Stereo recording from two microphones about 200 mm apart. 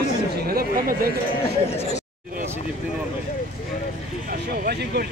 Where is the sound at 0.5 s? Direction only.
45° right (ahead or behind).